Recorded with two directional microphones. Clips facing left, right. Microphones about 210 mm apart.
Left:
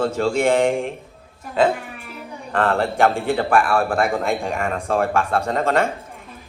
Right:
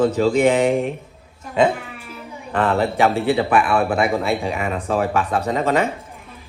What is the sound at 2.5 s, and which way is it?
A man's voice, 5° right (ahead or behind).